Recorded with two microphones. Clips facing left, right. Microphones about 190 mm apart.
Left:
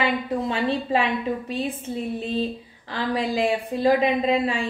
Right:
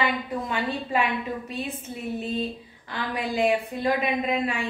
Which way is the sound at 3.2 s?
30° left (ahead or behind).